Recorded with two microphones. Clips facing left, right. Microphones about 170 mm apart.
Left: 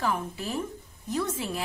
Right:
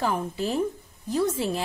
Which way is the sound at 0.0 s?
30° right (ahead or behind).